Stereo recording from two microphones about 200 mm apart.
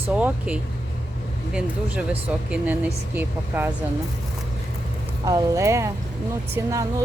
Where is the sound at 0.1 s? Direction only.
5° right (ahead or behind).